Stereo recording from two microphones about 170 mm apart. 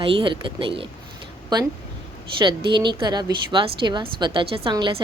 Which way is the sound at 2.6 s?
25° right (ahead or behind).